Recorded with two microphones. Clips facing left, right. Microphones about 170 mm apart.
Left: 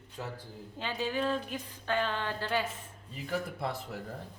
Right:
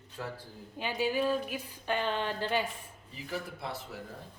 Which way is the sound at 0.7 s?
10° right (ahead or behind).